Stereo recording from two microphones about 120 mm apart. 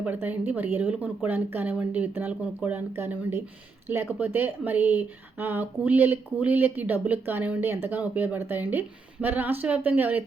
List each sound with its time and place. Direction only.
0.0 s speech: 15° right (ahead or behind)